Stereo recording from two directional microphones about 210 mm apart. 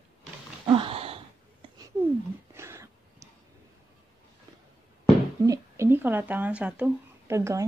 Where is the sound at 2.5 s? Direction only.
15° right (ahead or behind).